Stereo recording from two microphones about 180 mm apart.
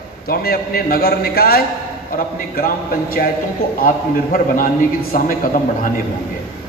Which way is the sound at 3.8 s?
50° left (ahead or behind).